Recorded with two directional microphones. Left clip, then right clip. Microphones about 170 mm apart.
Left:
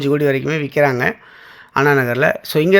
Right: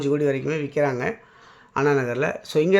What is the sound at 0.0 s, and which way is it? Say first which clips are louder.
Speech: left 6 dB; 30° left (ahead or behind).